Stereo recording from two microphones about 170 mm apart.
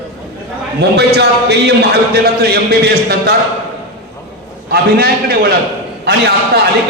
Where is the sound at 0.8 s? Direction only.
75° right (ahead or behind).